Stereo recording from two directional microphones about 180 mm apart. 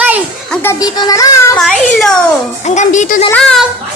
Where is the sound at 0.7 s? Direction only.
20° left (ahead or behind).